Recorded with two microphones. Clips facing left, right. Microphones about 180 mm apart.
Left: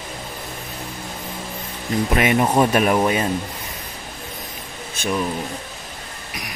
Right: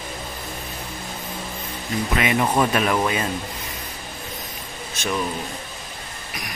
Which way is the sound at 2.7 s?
45° left (ahead or behind).